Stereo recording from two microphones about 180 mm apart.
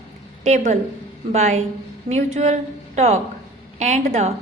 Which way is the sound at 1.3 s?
40° right (ahead or behind).